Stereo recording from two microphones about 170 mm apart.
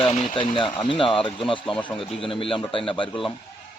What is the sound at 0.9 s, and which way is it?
Speech, 30° left (ahead or behind).